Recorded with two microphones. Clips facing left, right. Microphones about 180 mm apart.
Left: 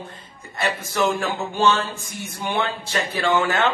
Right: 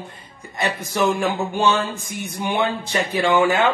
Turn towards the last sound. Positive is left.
turn(degrees=-10)  # may be behind; listen again after turning